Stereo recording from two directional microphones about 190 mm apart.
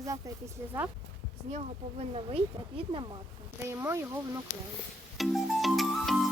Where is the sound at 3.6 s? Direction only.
15° right (ahead or behind).